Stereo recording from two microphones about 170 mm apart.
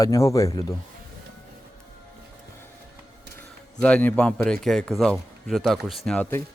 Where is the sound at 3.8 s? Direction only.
10° left (ahead or behind).